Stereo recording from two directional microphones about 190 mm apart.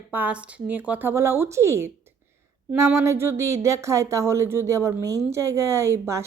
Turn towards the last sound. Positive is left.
turn(degrees=-15)  # may be behind; listen again after turning